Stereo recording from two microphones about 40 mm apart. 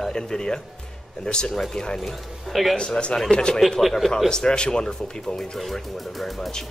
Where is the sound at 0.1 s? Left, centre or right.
Centre.